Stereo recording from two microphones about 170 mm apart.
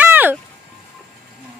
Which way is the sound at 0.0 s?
10° right (ahead or behind).